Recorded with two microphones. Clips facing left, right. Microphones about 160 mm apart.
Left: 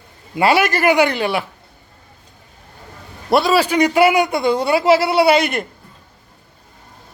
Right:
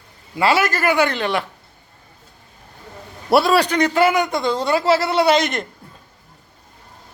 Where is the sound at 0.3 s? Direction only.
15° left (ahead or behind).